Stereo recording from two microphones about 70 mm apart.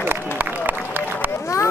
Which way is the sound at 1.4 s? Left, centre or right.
Left.